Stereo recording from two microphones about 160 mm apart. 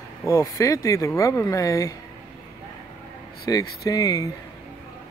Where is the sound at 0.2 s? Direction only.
20° left (ahead or behind).